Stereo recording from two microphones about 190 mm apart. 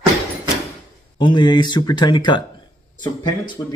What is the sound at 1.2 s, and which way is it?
Speech, 25° left (ahead or behind).